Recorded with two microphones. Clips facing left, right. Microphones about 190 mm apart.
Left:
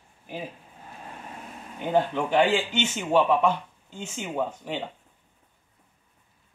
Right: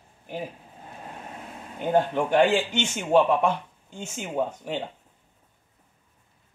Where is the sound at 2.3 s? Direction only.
45° right (ahead or behind).